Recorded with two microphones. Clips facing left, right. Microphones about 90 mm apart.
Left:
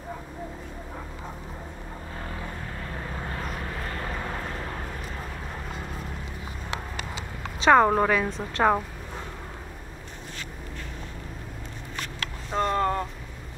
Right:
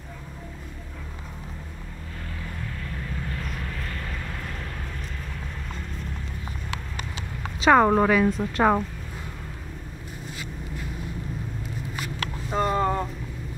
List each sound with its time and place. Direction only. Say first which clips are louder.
2.8 s vehicle: left 2 dB; 35° left (ahead or behind)
7.6 s a woman's voice: right 1 dB; centre (ahead or behind)
12.0 s vehicle: right 2 dB; 5° right (ahead or behind)